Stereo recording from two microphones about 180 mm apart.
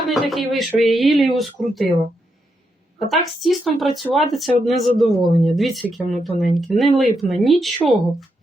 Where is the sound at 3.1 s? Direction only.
Centre (ahead or behind).